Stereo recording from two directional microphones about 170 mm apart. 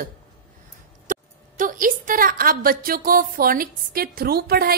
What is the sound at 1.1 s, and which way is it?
A woman's voice, 50° right (ahead or behind).